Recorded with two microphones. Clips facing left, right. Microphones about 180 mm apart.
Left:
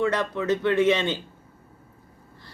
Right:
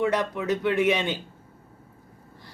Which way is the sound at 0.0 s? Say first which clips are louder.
Even; 15° right (ahead or behind).